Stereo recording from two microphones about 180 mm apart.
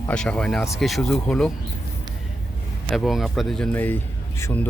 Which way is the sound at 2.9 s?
Centre (ahead or behind).